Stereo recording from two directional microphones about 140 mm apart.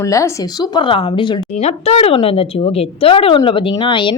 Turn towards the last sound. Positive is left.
turn(degrees=35)  # may be behind; listen again after turning